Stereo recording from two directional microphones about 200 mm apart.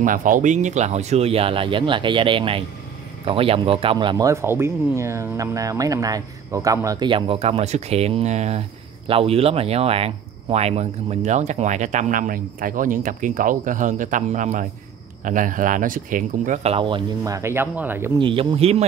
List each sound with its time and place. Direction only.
0.0 s speech: 40° right (ahead or behind); by 18.1 s 10° right (ahead or behind)
18.2 s speech: 25° right (ahead or behind)